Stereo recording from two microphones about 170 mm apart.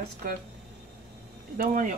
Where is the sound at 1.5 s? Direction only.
50° right (ahead or behind).